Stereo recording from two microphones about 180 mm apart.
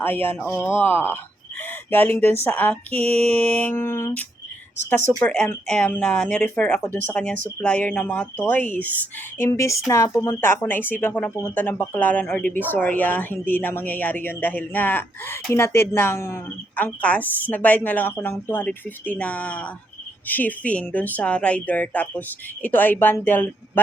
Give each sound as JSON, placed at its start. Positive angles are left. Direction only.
{"t": 0.0, "sound": "speech", "side_deg": 10}